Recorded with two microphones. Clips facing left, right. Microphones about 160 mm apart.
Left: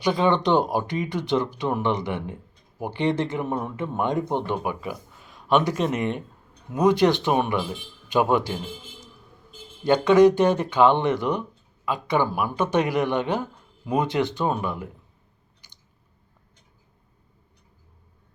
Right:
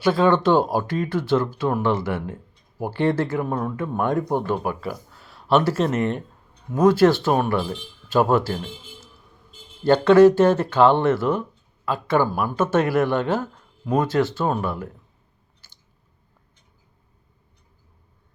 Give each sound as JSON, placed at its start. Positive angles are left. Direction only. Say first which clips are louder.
{"t": 0.0, "sound": "speech", "louder": "right 3 dB", "side_deg": 15}
{"t": 5.1, "sound": "a sound", "louder": "right 1 dB", "side_deg": 15}
{"t": 5.5, "sound": "speech", "louder": "right 2 dB", "side_deg": 15}
{"t": 15.6, "sound": "chewing", "louder": "left 1 dB", "side_deg": 15}